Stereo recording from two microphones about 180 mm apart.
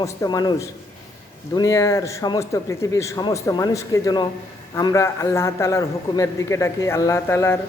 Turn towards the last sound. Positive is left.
turn(degrees=15)  # may be behind; listen again after turning